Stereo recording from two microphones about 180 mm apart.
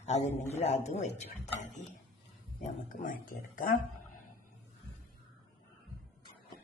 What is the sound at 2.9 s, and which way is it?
Speech, 50° left (ahead or behind).